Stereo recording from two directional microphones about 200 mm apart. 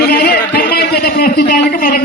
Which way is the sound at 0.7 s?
55° left (ahead or behind).